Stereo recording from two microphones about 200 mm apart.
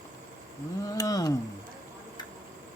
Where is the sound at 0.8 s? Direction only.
15° left (ahead or behind).